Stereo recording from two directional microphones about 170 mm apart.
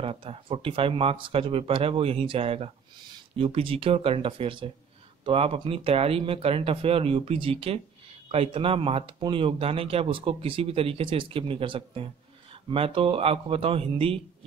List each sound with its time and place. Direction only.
0.0 s speech: 35° right (ahead or behind)